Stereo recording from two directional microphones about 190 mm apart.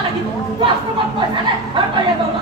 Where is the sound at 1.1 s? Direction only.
25° right (ahead or behind).